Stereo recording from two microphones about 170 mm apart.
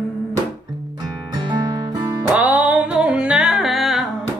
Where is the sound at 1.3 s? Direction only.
25° right (ahead or behind).